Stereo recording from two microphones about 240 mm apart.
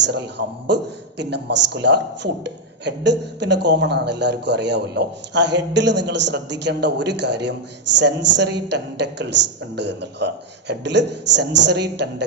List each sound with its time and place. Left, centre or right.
0.0 s a man's voice: right